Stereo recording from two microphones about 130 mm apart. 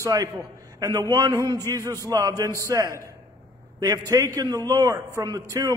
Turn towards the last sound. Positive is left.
turn(degrees=-25)  # may be behind; listen again after turning